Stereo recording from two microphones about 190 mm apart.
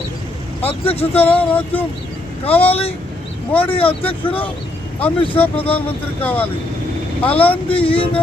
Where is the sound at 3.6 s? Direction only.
30° left (ahead or behind).